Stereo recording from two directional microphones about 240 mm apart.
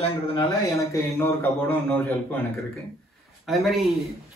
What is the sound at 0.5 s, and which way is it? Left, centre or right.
Speech, centre.